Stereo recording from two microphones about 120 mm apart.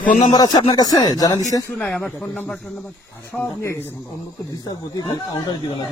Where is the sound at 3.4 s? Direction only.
20° left (ahead or behind).